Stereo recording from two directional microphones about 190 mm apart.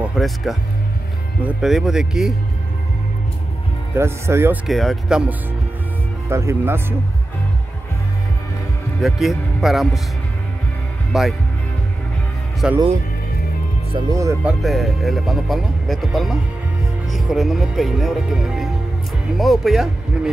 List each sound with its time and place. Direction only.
0.0 s speech: centre (ahead or behind)
3.9 s speech: 15° right (ahead or behind)
4.6 s speech: centre (ahead or behind)
6.2 s speech: 15° right (ahead or behind)
9.0 s speech: centre (ahead or behind)
11.1 s speech: centre (ahead or behind)
12.6 s speech: 5° right (ahead or behind)
13.9 s speech: 20° right (ahead or behind)
14.4 s speech: centre (ahead or behind)